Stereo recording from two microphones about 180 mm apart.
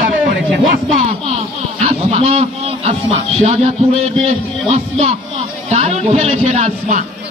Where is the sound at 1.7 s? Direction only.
35° right (ahead or behind).